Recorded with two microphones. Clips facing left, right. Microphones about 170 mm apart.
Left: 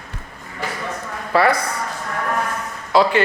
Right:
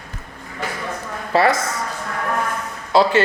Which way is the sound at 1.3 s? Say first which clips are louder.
Even; 25° right (ahead or behind).